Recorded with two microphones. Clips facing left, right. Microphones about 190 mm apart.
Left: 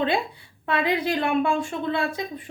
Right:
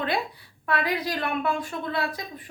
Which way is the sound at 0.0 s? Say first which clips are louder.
Left 4 dB; 25° left (ahead or behind).